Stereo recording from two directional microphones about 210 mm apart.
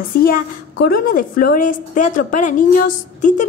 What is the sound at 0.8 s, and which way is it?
A woman's voice, 45° left (ahead or behind).